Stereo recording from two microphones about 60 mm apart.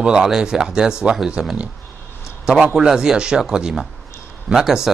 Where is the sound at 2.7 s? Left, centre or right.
Centre.